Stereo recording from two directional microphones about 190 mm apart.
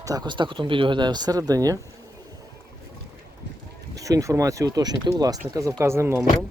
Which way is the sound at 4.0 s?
20° right (ahead or behind).